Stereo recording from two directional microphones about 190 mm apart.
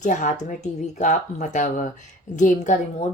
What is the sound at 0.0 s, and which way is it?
A woman's voice, 40° left (ahead or behind).